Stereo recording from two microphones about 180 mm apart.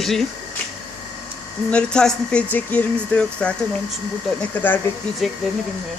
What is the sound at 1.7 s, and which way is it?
A man's voice, 5° left (ahead or behind).